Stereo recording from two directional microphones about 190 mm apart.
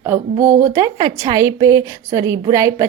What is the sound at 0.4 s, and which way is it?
Speech, 40° right (ahead or behind).